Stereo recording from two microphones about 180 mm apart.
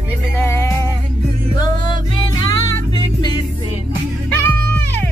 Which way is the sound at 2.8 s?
30° right (ahead or behind).